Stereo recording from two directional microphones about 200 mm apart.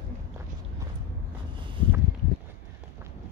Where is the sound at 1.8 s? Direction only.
25° right (ahead or behind).